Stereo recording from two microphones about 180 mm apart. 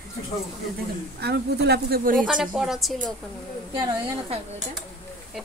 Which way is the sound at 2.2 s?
5° right (ahead or behind).